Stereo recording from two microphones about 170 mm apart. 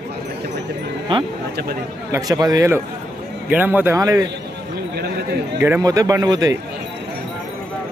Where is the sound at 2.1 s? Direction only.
20° right (ahead or behind).